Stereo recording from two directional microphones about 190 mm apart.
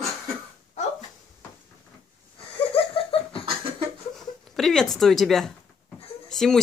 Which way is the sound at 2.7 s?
30° left (ahead or behind).